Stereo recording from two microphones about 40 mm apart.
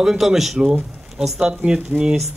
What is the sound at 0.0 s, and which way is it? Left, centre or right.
Speech, centre.